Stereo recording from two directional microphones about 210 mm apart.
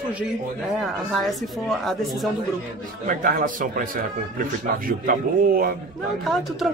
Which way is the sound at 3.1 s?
40° right (ahead or behind).